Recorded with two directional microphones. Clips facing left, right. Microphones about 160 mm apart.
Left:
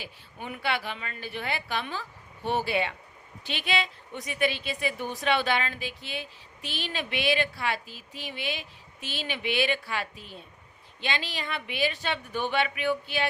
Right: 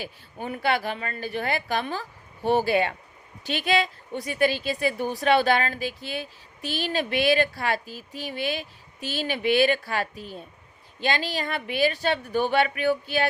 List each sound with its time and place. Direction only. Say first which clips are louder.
0.0 s a woman's voice: right 6 dB; 40° right (ahead or behind)